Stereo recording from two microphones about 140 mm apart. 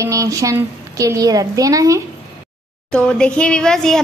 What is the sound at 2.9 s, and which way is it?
Speech, 5° left (ahead or behind).